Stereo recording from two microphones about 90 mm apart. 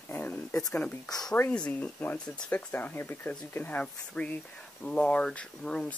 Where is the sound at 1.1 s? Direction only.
45° left (ahead or behind).